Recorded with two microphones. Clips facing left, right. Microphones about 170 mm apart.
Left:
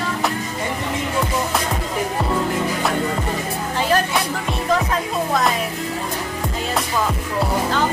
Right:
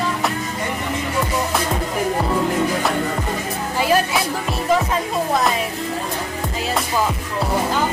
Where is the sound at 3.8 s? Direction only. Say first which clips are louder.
Right 1 dB; 5° right (ahead or behind).